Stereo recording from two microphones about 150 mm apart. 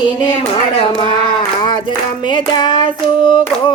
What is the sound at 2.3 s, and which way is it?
Hands, 30° left (ahead or behind).